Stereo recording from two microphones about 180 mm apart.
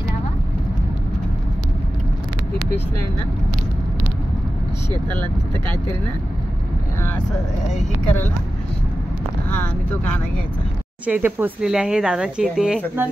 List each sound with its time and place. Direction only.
11.1 s speech: 10° right (ahead or behind)